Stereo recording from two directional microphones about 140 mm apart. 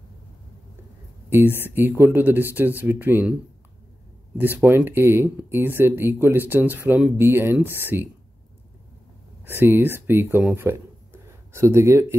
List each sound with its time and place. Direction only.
1.6 s speech: 15° right (ahead or behind)
4.4 s speech: 15° right (ahead or behind)
9.4 s speech: 15° right (ahead or behind)